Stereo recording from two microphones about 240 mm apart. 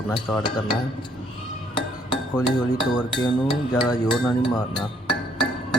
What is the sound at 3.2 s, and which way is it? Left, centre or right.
Music, centre.